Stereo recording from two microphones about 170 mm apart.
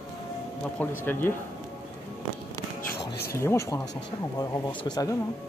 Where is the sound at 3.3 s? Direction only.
15° left (ahead or behind).